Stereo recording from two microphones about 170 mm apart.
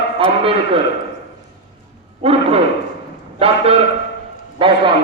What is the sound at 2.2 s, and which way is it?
A man's voice, 35° right (ahead or behind).